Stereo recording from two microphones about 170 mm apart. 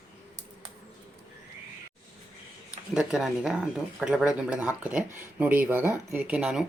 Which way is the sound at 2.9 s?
5° right (ahead or behind).